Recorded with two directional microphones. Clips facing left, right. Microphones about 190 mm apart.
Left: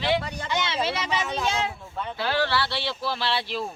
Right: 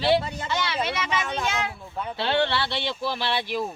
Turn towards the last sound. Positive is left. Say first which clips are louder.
# right 1 dB
turn(degrees=-15)  # may be behind; listen again after turning